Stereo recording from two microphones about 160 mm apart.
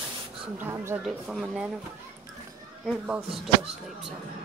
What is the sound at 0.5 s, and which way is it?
Speech, 15° right (ahead or behind).